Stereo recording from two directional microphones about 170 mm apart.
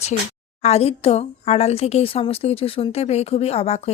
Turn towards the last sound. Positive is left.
turn(degrees=35)  # may be behind; listen again after turning